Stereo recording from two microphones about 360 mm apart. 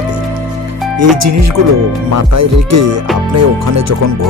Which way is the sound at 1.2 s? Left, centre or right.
Right.